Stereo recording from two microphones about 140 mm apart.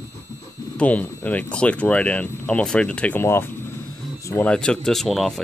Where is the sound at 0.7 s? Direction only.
10° left (ahead or behind).